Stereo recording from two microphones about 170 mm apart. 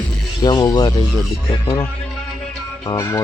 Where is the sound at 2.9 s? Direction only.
15° left (ahead or behind).